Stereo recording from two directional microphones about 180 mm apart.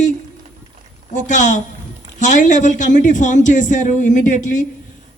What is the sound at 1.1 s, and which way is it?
A woman's voice, 45° left (ahead or behind).